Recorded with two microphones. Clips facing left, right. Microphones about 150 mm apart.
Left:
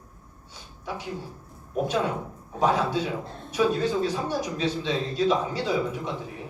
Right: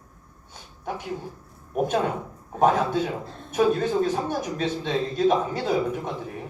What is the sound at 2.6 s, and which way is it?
A man's voice, 50° right (ahead or behind).